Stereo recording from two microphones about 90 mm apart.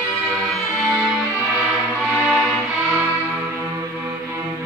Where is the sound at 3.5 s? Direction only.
30° right (ahead or behind).